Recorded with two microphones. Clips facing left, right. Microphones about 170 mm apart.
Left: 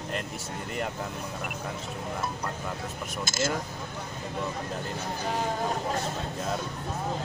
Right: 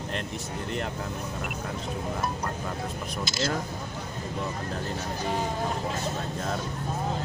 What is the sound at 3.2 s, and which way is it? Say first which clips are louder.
Speech: left 1 dB; 50° left (ahead or behind).